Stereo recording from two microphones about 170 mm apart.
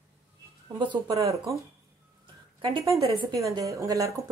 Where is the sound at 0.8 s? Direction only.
25° right (ahead or behind).